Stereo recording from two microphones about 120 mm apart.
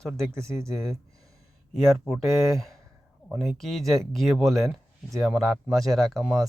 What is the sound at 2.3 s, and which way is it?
Speech, centre (ahead or behind).